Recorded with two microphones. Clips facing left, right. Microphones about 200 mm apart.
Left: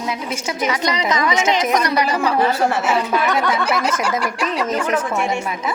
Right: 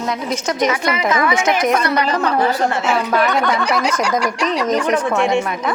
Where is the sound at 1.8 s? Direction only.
10° left (ahead or behind).